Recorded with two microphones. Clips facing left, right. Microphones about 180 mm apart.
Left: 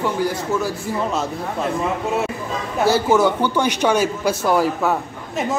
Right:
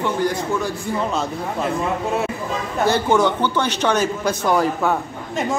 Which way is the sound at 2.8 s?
5° left (ahead or behind).